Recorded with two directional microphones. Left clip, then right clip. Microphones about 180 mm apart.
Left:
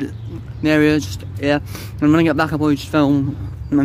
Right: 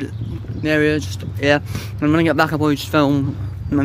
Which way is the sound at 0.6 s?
20° left (ahead or behind).